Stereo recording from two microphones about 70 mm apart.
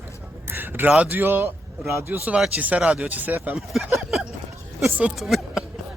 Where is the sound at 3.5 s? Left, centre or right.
Centre.